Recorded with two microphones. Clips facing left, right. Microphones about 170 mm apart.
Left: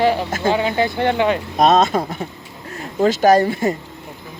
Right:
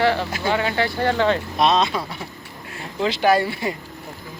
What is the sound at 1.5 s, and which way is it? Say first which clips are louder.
Speech: left 5 dB; 45° left (ahead or behind).